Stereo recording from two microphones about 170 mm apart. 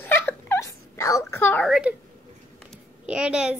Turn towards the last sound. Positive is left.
turn(degrees=-5)  # may be behind; listen again after turning